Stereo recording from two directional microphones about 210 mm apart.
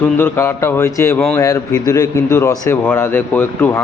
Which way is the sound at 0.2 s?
10° left (ahead or behind).